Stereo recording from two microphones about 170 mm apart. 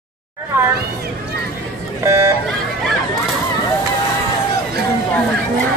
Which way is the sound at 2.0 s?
15° right (ahead or behind).